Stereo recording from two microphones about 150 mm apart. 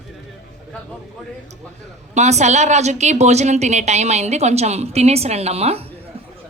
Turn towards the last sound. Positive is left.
turn(degrees=-45)  # may be behind; listen again after turning